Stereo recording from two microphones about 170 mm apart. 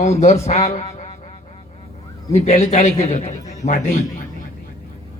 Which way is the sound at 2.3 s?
40° left (ahead or behind).